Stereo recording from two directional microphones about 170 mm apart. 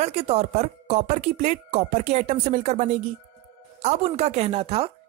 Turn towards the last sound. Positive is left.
turn(degrees=-35)  # may be behind; listen again after turning